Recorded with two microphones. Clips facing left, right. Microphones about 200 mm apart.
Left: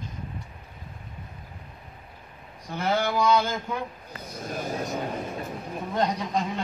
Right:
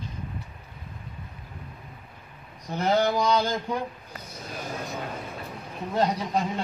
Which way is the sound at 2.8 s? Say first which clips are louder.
Right 3 dB; 40° right (ahead or behind).